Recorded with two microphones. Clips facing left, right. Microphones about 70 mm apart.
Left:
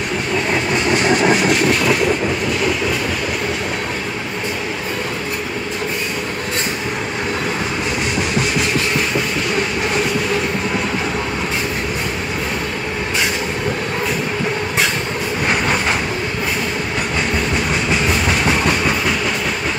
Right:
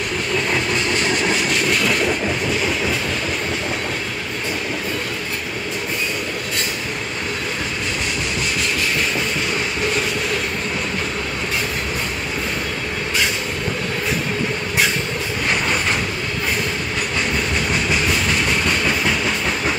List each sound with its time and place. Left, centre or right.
0.5 s train: centre